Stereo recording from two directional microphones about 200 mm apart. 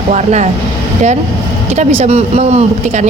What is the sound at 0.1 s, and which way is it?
Speech, 35° right (ahead or behind).